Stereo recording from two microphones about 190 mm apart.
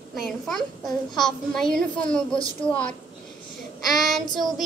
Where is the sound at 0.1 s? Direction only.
Centre (ahead or behind).